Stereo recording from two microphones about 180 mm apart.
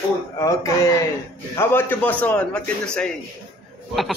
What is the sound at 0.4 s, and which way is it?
A man's voice, 20° left (ahead or behind).